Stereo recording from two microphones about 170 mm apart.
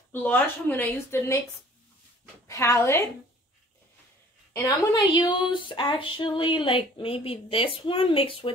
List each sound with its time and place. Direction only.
0.1 s speech: 10° left (ahead or behind)
2.4 s a woman's voice: 15° left (ahead or behind)
4.6 s speech: 25° left (ahead or behind)